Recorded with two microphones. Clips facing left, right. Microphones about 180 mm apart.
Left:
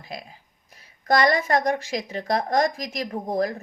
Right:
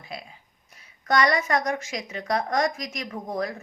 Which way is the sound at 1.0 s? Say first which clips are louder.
Left 2 dB; 35° left (ahead or behind).